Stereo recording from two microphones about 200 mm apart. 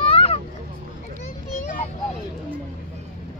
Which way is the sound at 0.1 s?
30° left (ahead or behind).